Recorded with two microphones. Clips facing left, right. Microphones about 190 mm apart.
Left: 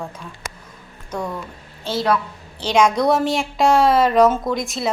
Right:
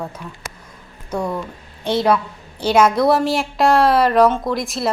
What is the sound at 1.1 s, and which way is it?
A woman's voice, 10° right (ahead or behind).